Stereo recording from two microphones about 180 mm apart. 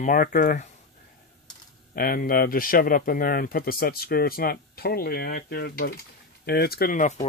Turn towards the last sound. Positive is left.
turn(degrees=45)  # may be behind; listen again after turning